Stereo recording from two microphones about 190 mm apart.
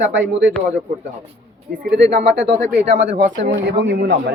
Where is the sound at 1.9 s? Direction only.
65° right (ahead or behind).